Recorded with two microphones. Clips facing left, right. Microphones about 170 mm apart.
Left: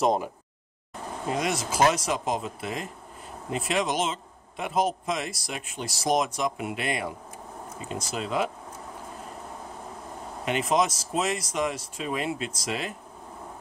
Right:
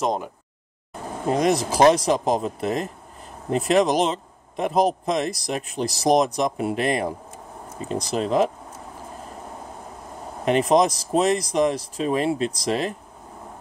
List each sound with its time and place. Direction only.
0.0 s a sound: centre (ahead or behind)
1.3 s a man's voice: 40° right (ahead or behind)
10.4 s a man's voice: 35° right (ahead or behind)